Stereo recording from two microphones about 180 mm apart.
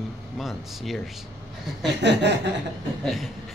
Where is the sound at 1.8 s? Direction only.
75° right (ahead or behind).